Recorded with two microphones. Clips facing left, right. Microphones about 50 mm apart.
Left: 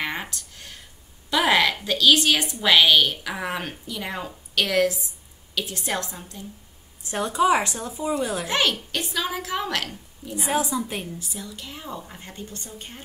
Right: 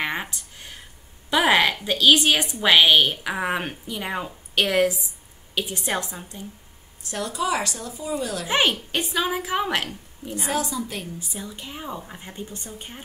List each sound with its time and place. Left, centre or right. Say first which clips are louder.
0.0 s a sound: right 2 dB; centre
1.3 s a woman's voice: right 1 dB; centre
7.0 s a woman's voice: left 5 dB; left
8.5 s a woman's voice: right 2 dB; right
10.3 s a woman's voice: left 2 dB; centre
11.1 s a woman's voice: right 1 dB; right